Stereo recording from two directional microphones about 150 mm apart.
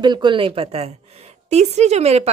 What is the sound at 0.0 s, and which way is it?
A woman's voice, 30° right (ahead or behind).